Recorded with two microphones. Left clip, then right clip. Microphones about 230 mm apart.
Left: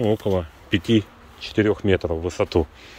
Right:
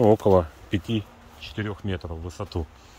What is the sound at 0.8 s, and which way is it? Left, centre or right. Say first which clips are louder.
Speech: left 10 dB; centre.